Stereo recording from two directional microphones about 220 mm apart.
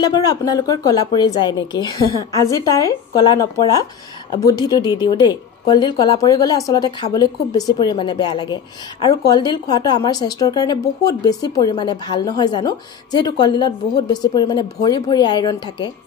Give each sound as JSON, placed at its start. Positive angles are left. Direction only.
{"t": 0.0, "sound": "a woman's voice", "side_deg": 15}